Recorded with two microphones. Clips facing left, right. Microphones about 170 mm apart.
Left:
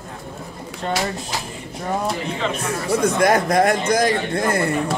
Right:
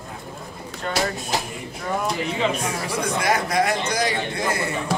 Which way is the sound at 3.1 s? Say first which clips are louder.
Left 4 dB; 50° left (ahead or behind).